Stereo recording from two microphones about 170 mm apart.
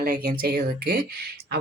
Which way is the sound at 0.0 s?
65° right (ahead or behind).